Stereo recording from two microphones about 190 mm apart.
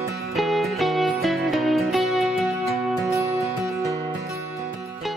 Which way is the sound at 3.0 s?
15° right (ahead or behind).